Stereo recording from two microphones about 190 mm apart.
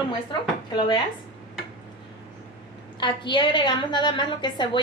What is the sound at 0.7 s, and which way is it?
Speech, 25° left (ahead or behind).